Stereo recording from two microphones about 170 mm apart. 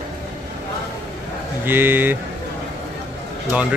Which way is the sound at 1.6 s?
10° right (ahead or behind).